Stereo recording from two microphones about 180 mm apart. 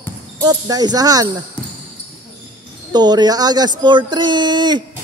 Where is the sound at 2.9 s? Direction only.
25° right (ahead or behind).